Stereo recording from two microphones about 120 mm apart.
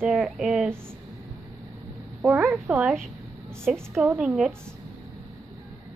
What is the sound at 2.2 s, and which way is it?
Speech, 5° right (ahead or behind).